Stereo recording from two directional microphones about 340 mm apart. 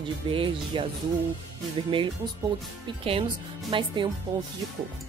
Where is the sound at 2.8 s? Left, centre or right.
Centre.